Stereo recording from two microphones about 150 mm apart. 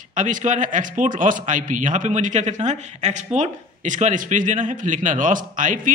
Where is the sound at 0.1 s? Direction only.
55° right (ahead or behind).